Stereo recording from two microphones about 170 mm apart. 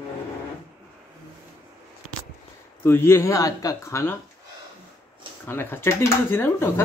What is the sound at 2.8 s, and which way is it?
Speech, 15° left (ahead or behind).